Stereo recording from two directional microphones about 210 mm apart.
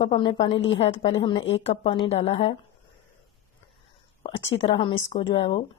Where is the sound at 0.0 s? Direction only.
25° left (ahead or behind).